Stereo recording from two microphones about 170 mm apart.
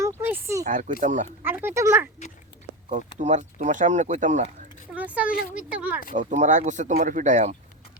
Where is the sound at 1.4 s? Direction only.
15° right (ahead or behind).